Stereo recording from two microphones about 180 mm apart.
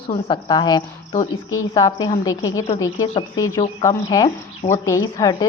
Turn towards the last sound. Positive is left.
turn(degrees=20)  # may be behind; listen again after turning